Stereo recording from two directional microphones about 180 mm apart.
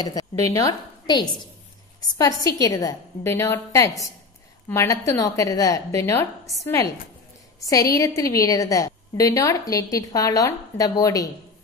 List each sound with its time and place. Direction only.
0.0 s a woman's voice: 20° left (ahead or behind)